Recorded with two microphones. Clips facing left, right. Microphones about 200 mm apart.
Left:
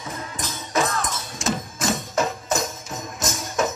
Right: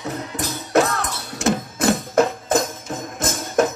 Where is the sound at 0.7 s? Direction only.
65° right (ahead or behind).